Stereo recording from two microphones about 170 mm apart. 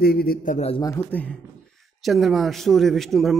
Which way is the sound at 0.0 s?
65° left (ahead or behind).